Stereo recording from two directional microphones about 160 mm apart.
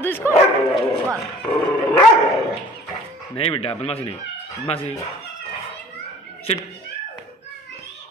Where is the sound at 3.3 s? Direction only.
35° left (ahead or behind).